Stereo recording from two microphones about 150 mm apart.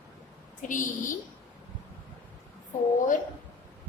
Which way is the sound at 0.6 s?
60° left (ahead or behind).